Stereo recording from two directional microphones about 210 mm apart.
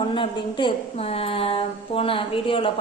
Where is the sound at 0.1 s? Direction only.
25° left (ahead or behind).